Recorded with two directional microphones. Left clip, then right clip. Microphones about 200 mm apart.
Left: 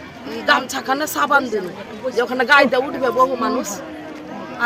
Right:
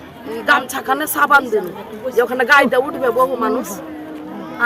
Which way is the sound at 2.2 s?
10° right (ahead or behind).